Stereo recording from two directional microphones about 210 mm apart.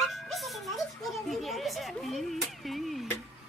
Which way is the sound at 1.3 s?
Centre (ahead or behind).